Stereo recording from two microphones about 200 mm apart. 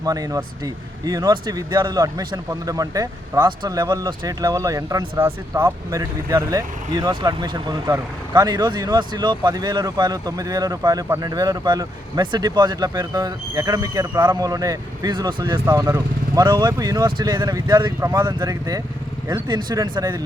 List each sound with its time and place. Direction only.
0.0 s speech: 20° right (ahead or behind)
15.6 s speech: 15° right (ahead or behind)